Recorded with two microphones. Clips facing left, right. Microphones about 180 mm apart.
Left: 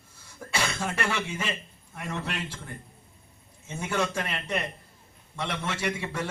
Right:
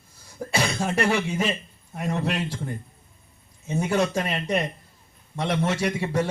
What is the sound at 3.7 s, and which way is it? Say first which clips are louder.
A man's voice: right 6 dB; 40° right (ahead or behind).